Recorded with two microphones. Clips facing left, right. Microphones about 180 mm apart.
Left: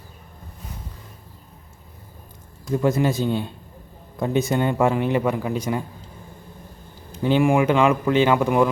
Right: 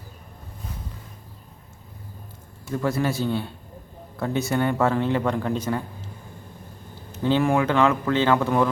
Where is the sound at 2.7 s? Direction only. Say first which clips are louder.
Left 4 dB; 15° left (ahead or behind).